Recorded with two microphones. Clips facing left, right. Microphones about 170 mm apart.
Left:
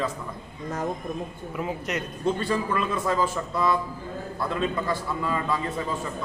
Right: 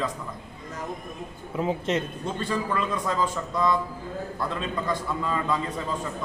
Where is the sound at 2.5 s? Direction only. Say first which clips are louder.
Left 1 dB; 5° left (ahead or behind).